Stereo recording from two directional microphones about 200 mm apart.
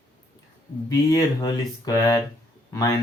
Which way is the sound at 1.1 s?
20° left (ahead or behind).